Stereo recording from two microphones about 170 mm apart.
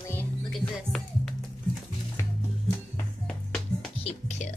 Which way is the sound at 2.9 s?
5° left (ahead or behind).